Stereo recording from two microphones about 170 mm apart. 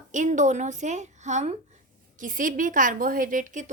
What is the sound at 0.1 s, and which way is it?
A woman's voice, 45° right (ahead or behind).